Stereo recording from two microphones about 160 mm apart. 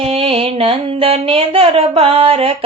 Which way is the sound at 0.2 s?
35° right (ahead or behind).